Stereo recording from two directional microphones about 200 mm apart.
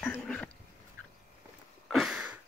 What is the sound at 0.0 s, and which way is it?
Dog, 10° left (ahead or behind).